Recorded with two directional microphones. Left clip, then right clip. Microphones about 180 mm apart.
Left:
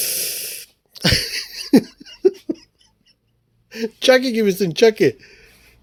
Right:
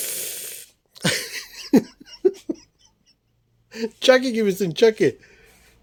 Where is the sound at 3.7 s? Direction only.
10° left (ahead or behind).